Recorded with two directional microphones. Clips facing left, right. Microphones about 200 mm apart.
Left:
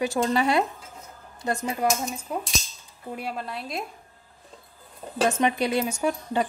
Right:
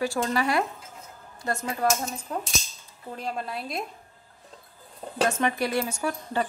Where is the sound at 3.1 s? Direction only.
5° left (ahead or behind).